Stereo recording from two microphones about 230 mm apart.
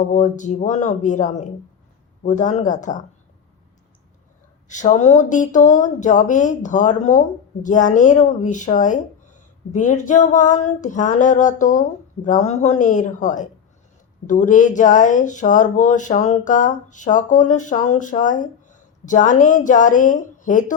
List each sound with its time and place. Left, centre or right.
0.0 s speech: left
4.7 s speech: left